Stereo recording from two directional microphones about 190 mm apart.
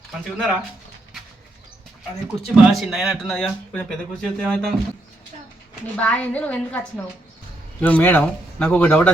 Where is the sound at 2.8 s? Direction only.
Centre (ahead or behind).